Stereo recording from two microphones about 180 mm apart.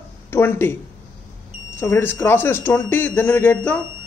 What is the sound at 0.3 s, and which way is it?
Speech, 10° left (ahead or behind).